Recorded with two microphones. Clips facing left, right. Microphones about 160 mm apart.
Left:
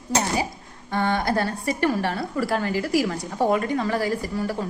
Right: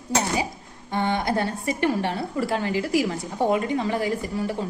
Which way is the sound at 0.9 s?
20° right (ahead or behind).